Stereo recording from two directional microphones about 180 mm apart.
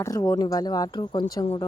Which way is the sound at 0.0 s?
20° left (ahead or behind).